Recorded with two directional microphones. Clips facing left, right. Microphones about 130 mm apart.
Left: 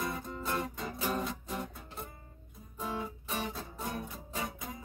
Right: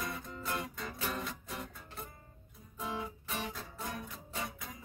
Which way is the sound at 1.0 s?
35° left (ahead or behind).